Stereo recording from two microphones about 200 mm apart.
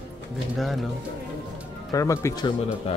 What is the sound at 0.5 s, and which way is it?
Speech, centre (ahead or behind).